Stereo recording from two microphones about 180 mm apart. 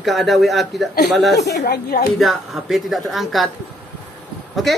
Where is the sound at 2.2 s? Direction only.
Centre (ahead or behind).